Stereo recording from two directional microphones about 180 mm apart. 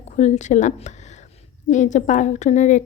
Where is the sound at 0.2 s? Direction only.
40° left (ahead or behind).